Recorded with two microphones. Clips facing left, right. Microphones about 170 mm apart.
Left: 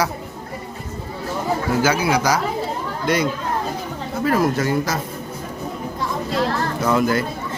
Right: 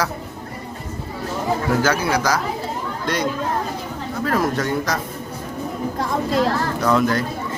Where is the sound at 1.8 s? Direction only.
10° left (ahead or behind).